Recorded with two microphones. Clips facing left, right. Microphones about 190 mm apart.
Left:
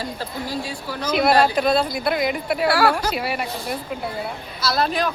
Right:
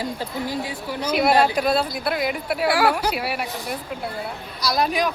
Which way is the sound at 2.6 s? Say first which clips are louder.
Even; 15° right (ahead or behind).